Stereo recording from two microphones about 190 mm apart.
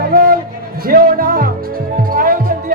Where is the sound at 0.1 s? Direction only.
50° right (ahead or behind).